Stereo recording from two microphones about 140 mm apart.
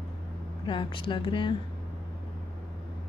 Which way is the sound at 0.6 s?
35° left (ahead or behind).